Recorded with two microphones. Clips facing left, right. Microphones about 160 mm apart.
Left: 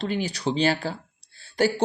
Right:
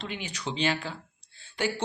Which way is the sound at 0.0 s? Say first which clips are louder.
Left 9 dB; 35° left (ahead or behind).